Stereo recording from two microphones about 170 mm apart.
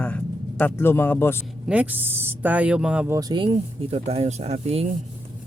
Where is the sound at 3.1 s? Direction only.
25° right (ahead or behind).